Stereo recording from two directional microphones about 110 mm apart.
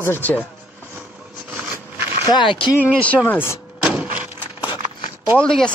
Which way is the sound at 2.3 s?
50° left (ahead or behind).